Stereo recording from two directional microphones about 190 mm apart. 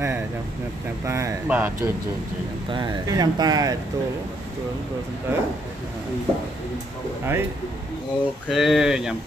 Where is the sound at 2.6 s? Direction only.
25° right (ahead or behind).